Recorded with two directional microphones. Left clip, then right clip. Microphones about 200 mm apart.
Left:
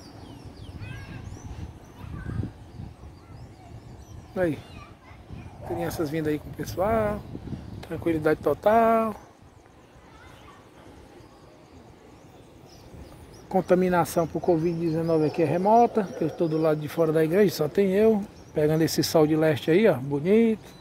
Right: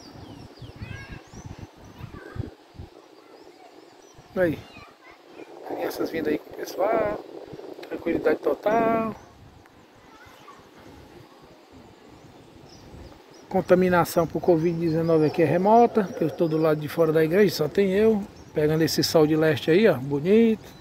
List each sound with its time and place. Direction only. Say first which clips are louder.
5.8 s speech: right 1 dB; 5° left (ahead or behind); by 9.1 s 20° left (ahead or behind)
13.5 s speech: right 2 dB; 15° left (ahead or behind)
13.7 s speech: right 2 dB; centre (ahead or behind)